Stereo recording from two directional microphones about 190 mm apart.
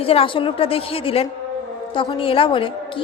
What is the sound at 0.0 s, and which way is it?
A woman's voice, 30° left (ahead or behind).